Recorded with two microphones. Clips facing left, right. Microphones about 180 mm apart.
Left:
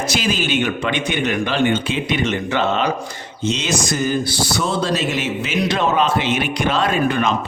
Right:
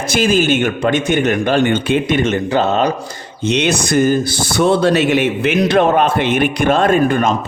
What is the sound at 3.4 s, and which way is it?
Speech, 65° right (ahead or behind).